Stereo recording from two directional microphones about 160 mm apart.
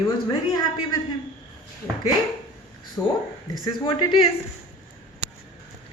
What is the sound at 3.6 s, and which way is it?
Speech, 30° left (ahead or behind).